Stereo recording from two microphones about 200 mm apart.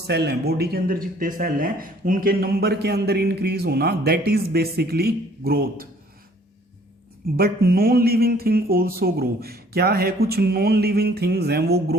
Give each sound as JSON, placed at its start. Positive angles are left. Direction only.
{"t": 0.1, "sound": "a man's voice", "side_deg": -55}
{"t": 7.3, "sound": "a man's voice", "side_deg": -50}